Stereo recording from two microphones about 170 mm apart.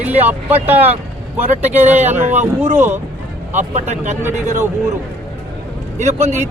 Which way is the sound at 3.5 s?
45° right (ahead or behind).